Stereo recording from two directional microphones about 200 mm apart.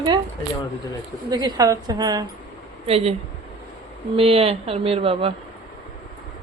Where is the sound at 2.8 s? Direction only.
30° right (ahead or behind).